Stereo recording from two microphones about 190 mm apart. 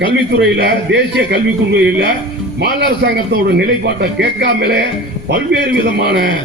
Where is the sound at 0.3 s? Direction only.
65° right (ahead or behind).